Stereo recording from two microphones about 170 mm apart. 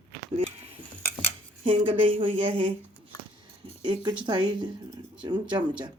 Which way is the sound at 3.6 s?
25° right (ahead or behind).